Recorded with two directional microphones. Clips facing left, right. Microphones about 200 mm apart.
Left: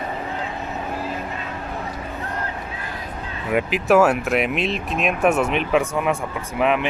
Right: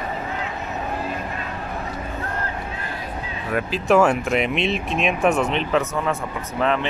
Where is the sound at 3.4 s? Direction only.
20° left (ahead or behind).